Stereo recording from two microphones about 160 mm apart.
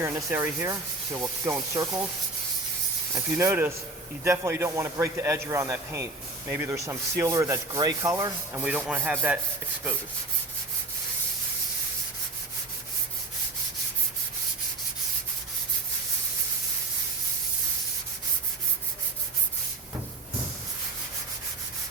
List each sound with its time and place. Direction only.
0.0 s speech: 15° right (ahead or behind)
1.7 s sanding: 20° right (ahead or behind)
3.2 s speech: 15° right (ahead or behind)
4.2 s sanding: 15° right (ahead or behind)
8.6 s speech: 5° right (ahead or behind)